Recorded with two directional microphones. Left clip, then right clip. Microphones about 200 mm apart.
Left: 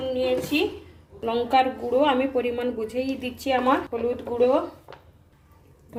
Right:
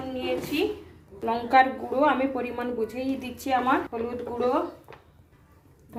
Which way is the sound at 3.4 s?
20° left (ahead or behind).